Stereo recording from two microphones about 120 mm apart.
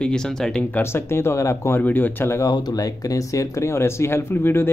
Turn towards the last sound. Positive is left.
turn(degrees=20)  # may be behind; listen again after turning